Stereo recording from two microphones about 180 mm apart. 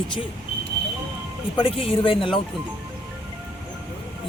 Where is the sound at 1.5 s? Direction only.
30° left (ahead or behind).